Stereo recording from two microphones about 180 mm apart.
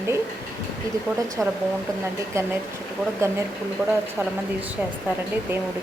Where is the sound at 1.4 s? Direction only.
10° right (ahead or behind).